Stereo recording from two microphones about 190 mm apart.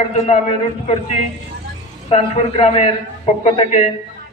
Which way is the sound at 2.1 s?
30° left (ahead or behind).